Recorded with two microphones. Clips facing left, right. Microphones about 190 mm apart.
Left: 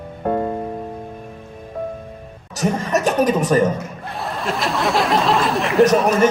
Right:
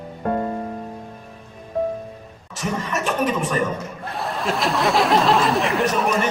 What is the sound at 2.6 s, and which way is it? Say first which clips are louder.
A man's voice: left 6 dB; 40° left (ahead or behind).